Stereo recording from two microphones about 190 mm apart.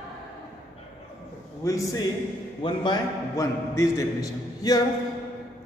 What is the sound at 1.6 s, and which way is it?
Speech, 15° left (ahead or behind).